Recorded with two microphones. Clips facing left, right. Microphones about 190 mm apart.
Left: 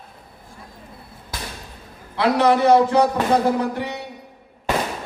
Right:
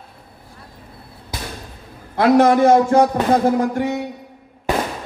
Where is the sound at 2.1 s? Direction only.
45° right (ahead or behind).